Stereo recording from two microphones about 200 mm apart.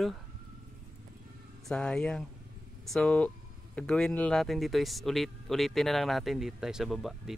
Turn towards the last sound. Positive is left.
turn(degrees=0)  # may be behind; listen again after turning